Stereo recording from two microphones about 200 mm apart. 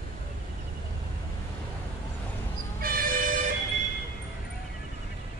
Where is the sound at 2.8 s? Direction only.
45° right (ahead or behind).